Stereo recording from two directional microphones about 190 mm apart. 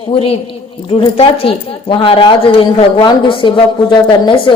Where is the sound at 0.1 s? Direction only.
30° left (ahead or behind).